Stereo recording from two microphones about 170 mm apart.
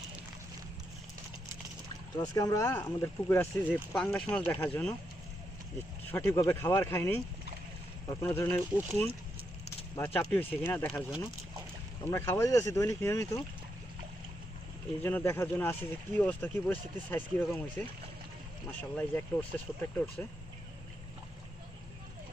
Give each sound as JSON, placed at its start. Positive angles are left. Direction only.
{"t": 2.1, "sound": "speech", "side_deg": 20}
{"t": 6.1, "sound": "speech", "side_deg": 10}
{"t": 12.0, "sound": "speech", "side_deg": 15}
{"t": 15.0, "sound": "speech", "side_deg": 15}